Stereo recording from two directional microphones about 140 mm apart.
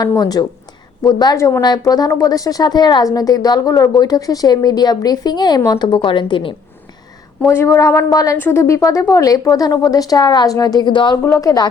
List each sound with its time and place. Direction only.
0.2 s a woman's voice: 30° left (ahead or behind)
7.4 s a woman's voice: 20° left (ahead or behind)
11.2 s a woman's voice: 25° left (ahead or behind)